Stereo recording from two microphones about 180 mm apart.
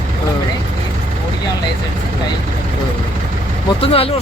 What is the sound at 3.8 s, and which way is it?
Speech, 30° left (ahead or behind).